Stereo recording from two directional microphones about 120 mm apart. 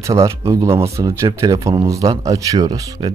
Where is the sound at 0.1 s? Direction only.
25° right (ahead or behind).